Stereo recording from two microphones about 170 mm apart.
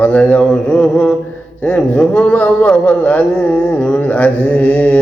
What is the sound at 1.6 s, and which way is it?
Speech, 10° left (ahead or behind).